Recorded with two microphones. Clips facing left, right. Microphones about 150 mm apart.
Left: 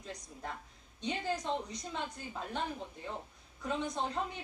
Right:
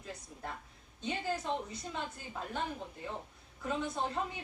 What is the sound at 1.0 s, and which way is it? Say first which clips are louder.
Speech: even; 5° right (ahead or behind).